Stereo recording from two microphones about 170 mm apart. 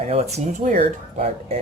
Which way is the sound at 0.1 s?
40° right (ahead or behind).